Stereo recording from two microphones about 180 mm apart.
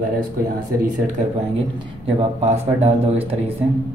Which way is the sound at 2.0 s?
35° right (ahead or behind).